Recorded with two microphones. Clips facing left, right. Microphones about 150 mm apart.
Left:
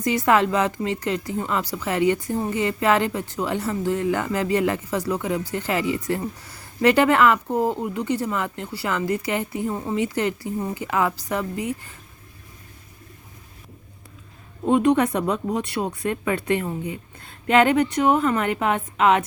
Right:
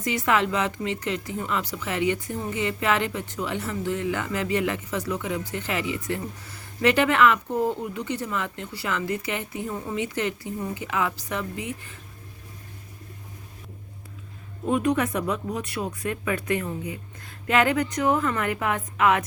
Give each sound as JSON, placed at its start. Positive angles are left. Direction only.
{"t": 0.0, "sound": "speech", "side_deg": 40}
{"t": 14.6, "sound": "speech", "side_deg": 30}